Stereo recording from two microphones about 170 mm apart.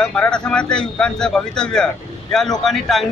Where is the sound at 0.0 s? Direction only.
5° left (ahead or behind).